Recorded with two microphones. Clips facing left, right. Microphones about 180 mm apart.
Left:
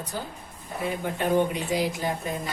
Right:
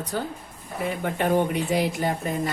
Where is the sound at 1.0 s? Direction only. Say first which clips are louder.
Right 1 dB; 60° right (ahead or behind).